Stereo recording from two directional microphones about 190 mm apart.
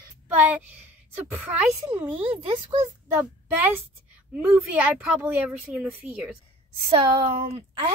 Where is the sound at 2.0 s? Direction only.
30° right (ahead or behind).